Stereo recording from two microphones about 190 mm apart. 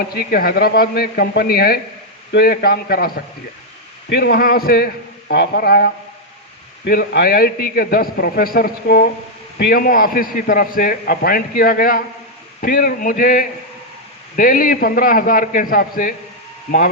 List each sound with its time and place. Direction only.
0.0 s a man's voice: 55° left (ahead or behind)
4.1 s a man's voice: 55° left (ahead or behind)